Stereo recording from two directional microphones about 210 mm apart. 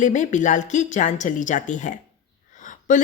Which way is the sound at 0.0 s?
35° left (ahead or behind).